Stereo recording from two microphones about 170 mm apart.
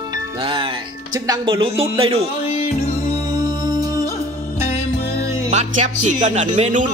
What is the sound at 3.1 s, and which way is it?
Music, 20° right (ahead or behind).